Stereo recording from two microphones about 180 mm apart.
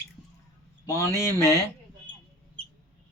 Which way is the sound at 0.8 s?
15° left (ahead or behind).